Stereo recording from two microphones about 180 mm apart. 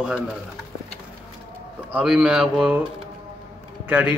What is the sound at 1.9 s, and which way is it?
Mantra, 5° right (ahead or behind).